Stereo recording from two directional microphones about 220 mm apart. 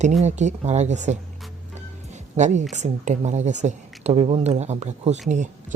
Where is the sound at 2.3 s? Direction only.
30° right (ahead or behind).